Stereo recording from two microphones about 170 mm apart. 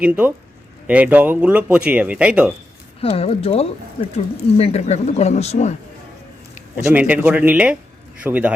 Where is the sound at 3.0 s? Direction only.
35° left (ahead or behind).